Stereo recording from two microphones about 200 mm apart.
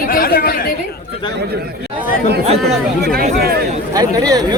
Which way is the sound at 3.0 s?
50° right (ahead or behind).